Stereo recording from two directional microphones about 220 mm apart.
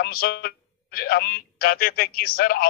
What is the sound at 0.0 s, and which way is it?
Speech, 45° left (ahead or behind).